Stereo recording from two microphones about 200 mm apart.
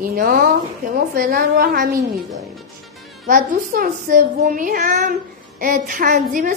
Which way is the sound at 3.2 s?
45° right (ahead or behind).